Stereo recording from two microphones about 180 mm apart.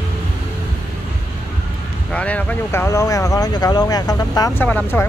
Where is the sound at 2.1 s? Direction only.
5° left (ahead or behind).